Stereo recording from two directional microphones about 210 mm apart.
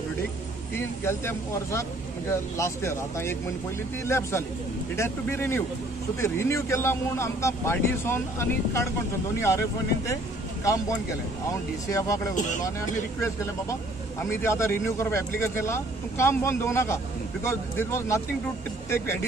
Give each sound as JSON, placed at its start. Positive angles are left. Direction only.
{"t": 0.7, "sound": "speech", "side_deg": 10}